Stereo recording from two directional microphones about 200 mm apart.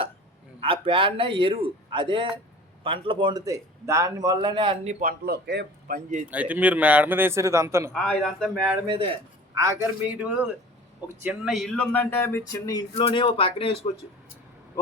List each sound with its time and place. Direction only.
0.6 s a man's voice: 25° right (ahead or behind); by 6.0 s 55° right (ahead or behind)
6.3 s speech: 5° right (ahead or behind)
7.9 s speech: centre (ahead or behind)
8.9 s a man's voice: 25° right (ahead or behind)
9.6 s speech: 15° right (ahead or behind); by 13.7 s 25° left (ahead or behind)